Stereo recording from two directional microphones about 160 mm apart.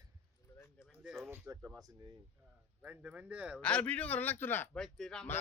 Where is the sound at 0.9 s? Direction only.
5° right (ahead or behind).